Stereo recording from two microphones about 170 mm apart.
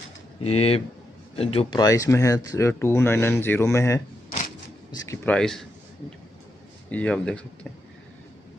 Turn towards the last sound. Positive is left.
turn(degrees=5)  # may be behind; listen again after turning